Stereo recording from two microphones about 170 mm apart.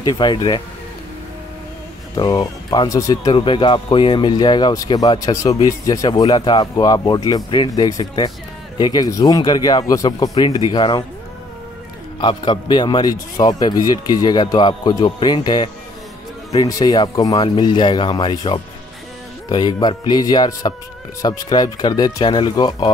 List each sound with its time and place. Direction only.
0.0 s speech: 25° left (ahead or behind)
2.1 s speech: 20° left (ahead or behind)
12.2 s speech: 25° left (ahead or behind)